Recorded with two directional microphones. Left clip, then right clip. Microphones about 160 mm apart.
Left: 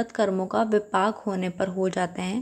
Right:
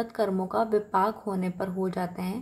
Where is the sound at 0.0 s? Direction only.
15° left (ahead or behind).